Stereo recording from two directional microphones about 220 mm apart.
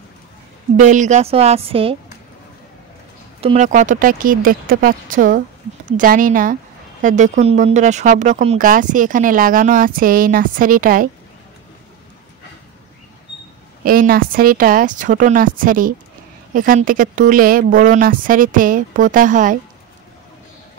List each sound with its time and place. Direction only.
0.7 s a woman's voice: 35° right (ahead or behind)
3.3 s speech: 30° right (ahead or behind)
13.8 s speech: 40° right (ahead or behind)